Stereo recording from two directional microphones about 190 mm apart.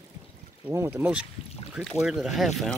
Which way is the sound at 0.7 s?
15° right (ahead or behind).